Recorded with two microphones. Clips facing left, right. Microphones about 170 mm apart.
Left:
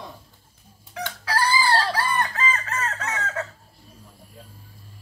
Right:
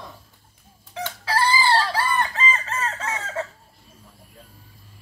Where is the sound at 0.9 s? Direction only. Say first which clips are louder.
Right 2 dB; 25° right (ahead or behind).